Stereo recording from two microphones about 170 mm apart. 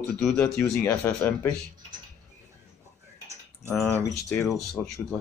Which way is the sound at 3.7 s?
15° left (ahead or behind).